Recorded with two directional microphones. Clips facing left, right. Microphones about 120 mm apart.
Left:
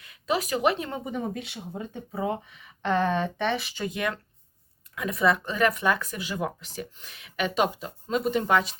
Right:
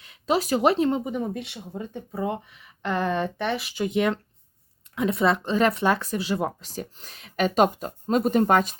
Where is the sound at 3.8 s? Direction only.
20° right (ahead or behind).